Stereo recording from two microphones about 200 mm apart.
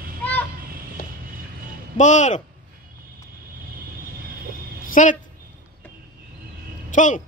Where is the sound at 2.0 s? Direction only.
35° left (ahead or behind).